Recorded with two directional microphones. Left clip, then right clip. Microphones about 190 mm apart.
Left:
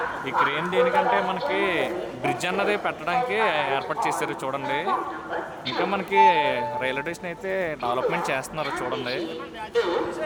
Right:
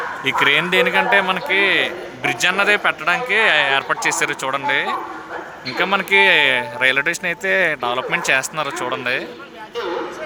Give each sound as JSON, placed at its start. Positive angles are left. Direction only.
{"t": 0.3, "sound": "speech", "side_deg": -20}
{"t": 1.7, "sound": "a man's voice", "side_deg": 0}